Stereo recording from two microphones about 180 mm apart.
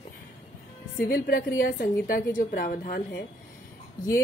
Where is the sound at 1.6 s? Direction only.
50° left (ahead or behind).